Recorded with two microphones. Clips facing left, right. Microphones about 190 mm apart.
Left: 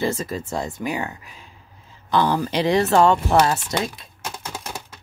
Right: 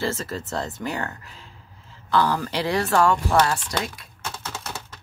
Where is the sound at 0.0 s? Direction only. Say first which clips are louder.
Left 3 dB; 15° left (ahead or behind).